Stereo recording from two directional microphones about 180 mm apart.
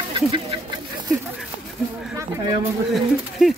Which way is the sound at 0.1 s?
30° right (ahead or behind).